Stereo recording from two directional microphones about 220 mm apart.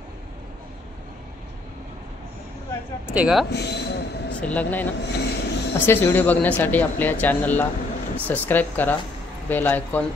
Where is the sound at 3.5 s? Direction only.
50° left (ahead or behind).